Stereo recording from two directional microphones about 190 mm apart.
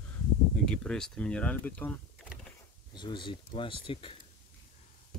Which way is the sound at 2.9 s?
25° left (ahead or behind).